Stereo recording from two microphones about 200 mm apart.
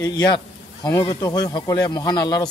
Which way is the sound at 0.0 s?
20° left (ahead or behind).